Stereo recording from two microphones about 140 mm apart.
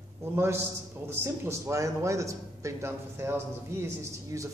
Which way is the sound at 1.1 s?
20° right (ahead or behind).